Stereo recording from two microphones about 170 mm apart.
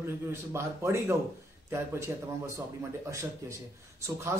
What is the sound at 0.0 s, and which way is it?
Speech, 15° right (ahead or behind).